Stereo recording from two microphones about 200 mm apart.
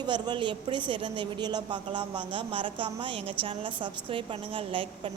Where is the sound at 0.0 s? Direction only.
20° right (ahead or behind).